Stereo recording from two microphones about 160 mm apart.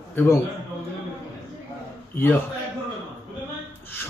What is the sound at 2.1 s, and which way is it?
Speech, 15° left (ahead or behind).